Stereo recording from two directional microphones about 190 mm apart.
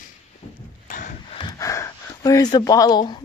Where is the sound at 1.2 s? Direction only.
25° left (ahead or behind).